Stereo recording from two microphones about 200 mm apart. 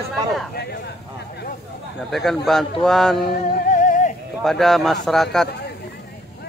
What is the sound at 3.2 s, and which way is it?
Music, 40° left (ahead or behind).